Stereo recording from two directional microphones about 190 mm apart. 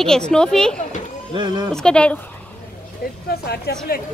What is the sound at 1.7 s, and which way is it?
Speech, 5° left (ahead or behind).